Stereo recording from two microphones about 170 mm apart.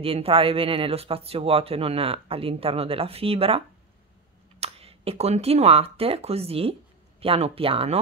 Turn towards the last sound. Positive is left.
turn(degrees=-35)  # may be behind; listen again after turning